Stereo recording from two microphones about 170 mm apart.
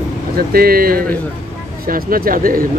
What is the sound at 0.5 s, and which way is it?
Speech, 60° right (ahead or behind).